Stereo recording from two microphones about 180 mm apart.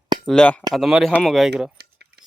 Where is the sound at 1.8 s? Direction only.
65° right (ahead or behind).